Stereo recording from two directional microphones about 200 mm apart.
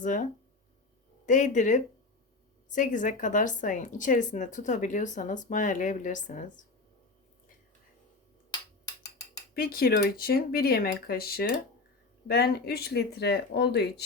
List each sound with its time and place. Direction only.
0.0 s speech: 40° left (ahead or behind)
1.3 s speech: 40° left (ahead or behind)
9.6 s speech: 50° left (ahead or behind)